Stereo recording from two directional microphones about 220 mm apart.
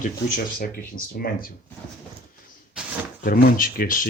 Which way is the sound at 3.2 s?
40° left (ahead or behind).